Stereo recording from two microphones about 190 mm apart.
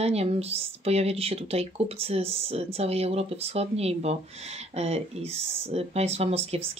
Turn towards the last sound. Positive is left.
turn(degrees=-30)  # may be behind; listen again after turning